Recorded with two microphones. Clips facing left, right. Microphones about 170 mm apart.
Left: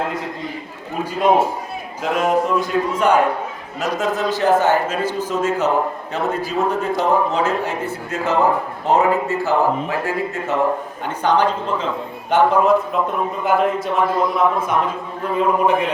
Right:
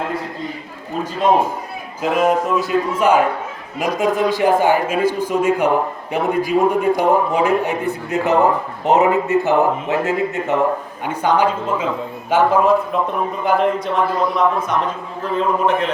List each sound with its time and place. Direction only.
2.0 s a man's voice: centre (ahead or behind)